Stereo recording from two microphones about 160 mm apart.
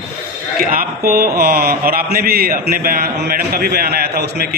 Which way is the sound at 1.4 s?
70° right (ahead or behind).